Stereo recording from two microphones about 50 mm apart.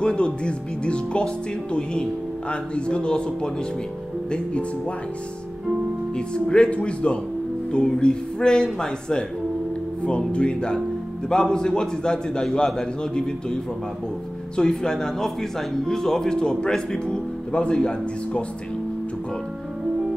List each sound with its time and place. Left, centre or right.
0.0 s speech: centre
6.5 s speech: left
10.0 s speech: left
14.6 s speech: centre